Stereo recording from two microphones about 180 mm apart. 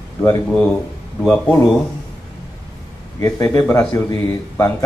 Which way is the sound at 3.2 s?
20° left (ahead or behind).